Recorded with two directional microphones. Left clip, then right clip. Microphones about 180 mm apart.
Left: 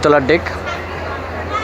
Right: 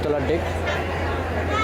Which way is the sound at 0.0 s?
20° left (ahead or behind).